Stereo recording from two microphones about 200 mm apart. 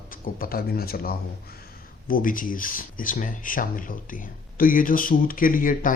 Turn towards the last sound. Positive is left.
turn(degrees=45)  # may be behind; listen again after turning